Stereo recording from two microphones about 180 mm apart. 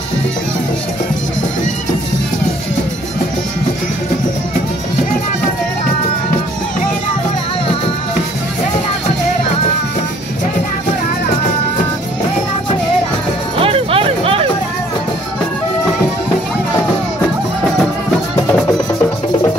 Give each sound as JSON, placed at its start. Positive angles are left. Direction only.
{"t": 13.6, "sound": "music", "side_deg": -30}